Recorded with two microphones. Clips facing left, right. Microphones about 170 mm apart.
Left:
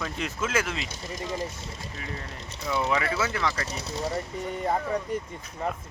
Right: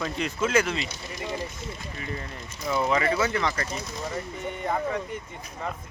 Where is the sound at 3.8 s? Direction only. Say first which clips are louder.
Left 2 dB; 30° left (ahead or behind).